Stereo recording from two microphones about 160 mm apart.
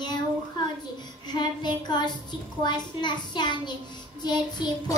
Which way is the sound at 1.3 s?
25° left (ahead or behind).